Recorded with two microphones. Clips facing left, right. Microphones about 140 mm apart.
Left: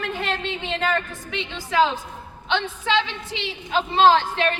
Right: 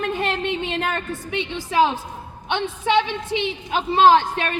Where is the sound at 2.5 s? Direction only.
20° right (ahead or behind).